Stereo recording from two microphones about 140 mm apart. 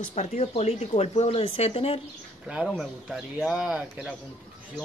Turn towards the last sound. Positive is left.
turn(degrees=-5)  # may be behind; listen again after turning